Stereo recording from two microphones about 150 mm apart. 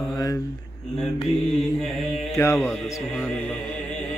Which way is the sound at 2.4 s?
20° left (ahead or behind).